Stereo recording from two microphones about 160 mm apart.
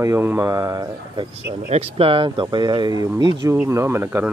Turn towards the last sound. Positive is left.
turn(degrees=-15)  # may be behind; listen again after turning